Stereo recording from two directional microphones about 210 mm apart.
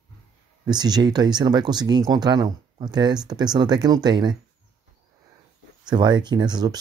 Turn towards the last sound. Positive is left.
turn(degrees=-20)  # may be behind; listen again after turning